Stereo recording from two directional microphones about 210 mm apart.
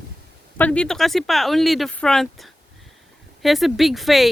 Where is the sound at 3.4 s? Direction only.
Centre (ahead or behind).